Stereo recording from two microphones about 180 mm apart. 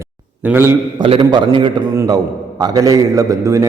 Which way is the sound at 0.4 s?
10° right (ahead or behind).